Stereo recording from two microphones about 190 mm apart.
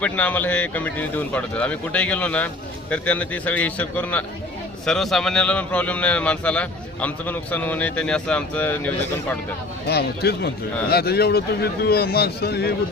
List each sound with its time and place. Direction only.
0.0 s a man's voice: 10° left (ahead or behind)
9.8 s a man's voice: 55° left (ahead or behind)